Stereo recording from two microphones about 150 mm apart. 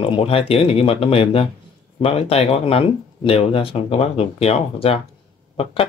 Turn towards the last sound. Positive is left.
turn(degrees=40)  # may be behind; listen again after turning